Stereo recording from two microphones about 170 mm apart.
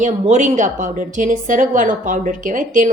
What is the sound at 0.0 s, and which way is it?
A woman's voice, 45° right (ahead or behind).